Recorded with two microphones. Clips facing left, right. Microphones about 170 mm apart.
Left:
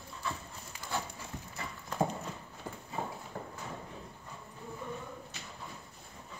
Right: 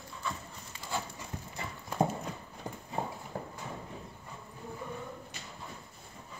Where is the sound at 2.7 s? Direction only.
15° right (ahead or behind).